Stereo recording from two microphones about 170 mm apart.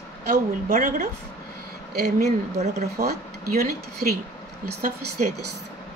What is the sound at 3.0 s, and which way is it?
Speech, 65° right (ahead or behind).